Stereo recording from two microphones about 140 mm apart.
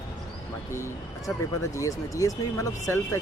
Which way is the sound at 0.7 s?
20° left (ahead or behind).